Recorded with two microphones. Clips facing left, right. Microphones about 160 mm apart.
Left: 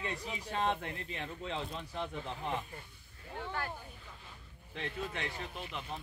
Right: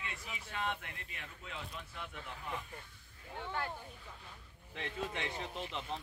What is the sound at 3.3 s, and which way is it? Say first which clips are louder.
Speech: left 1 dB; 20° right (ahead or behind).